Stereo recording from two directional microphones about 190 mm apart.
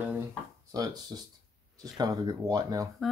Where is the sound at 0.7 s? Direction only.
20° right (ahead or behind).